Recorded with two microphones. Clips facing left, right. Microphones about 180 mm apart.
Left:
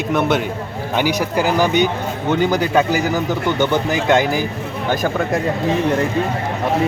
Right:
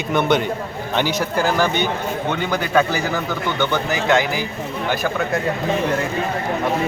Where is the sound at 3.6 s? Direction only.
20° left (ahead or behind).